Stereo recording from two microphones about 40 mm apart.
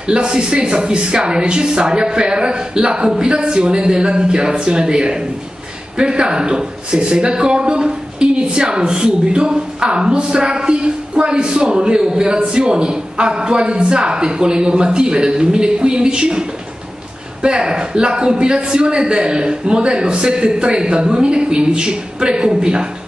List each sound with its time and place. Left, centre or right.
0.0 s speech: right